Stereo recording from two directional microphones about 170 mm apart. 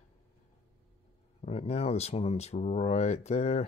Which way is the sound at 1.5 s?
40° left (ahead or behind).